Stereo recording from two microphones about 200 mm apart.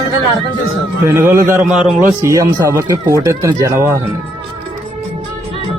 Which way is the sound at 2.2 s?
15° right (ahead or behind).